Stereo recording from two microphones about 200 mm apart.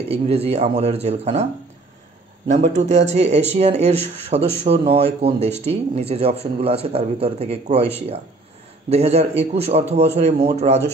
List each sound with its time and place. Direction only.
0.1 s speech: 30° right (ahead or behind)
8.9 s speech: 30° right (ahead or behind)